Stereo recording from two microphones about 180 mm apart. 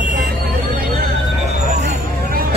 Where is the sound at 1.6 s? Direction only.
40° right (ahead or behind).